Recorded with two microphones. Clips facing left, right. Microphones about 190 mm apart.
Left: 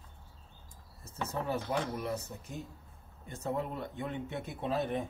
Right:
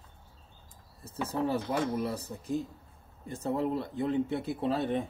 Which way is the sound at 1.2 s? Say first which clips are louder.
Right 4 dB; 30° right (ahead or behind).